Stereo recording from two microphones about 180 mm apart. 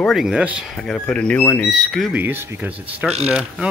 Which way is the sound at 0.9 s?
5° left (ahead or behind).